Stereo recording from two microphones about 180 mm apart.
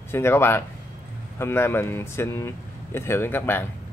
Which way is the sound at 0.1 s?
15° left (ahead or behind).